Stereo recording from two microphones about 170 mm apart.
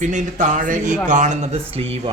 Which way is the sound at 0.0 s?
45° right (ahead or behind).